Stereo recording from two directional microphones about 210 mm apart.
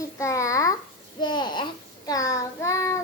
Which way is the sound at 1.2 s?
20° left (ahead or behind).